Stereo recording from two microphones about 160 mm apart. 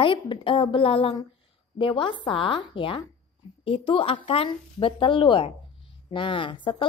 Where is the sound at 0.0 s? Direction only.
35° left (ahead or behind).